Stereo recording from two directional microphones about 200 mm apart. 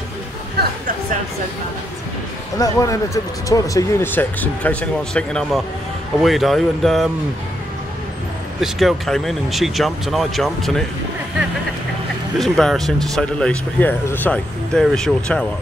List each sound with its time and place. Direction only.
2.6 s speech: 15° left (ahead or behind); by 7.1 s centre (ahead or behind)
8.5 s speech: centre (ahead or behind)
12.4 s speech: centre (ahead or behind)